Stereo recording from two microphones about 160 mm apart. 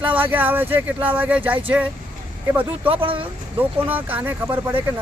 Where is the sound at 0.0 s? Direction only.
10° right (ahead or behind).